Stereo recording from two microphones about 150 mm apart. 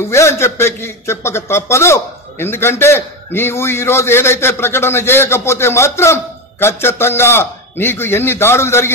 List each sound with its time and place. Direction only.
0.0 s a man's voice: 20° left (ahead or behind)